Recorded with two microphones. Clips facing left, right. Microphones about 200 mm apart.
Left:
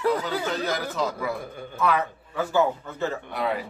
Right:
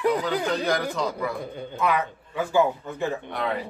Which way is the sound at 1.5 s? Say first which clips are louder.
Left 1 dB; 15° right (ahead or behind).